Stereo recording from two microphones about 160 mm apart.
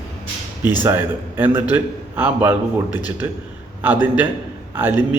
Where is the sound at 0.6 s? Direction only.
10° right (ahead or behind).